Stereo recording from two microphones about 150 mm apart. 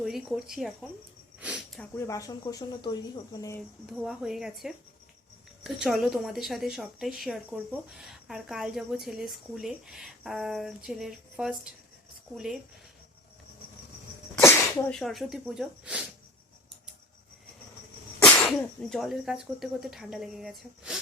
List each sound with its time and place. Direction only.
0.0 s speech: centre (ahead or behind)
1.4 s a sound: 5° right (ahead or behind)
1.8 s speech: 20° left (ahead or behind)
4.0 s speech: centre (ahead or behind)
14.3 s sneeze: 15° left (ahead or behind)
14.9 s speech: centre (ahead or behind)
18.2 s speech: 5° left (ahead or behind)